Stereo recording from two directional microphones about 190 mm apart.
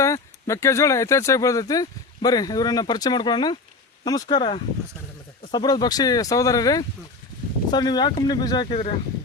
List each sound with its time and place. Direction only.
0.0 s speech: 15° left (ahead or behind)